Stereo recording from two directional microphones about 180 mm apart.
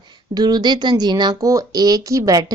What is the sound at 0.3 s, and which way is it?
A woman's voice, 20° right (ahead or behind).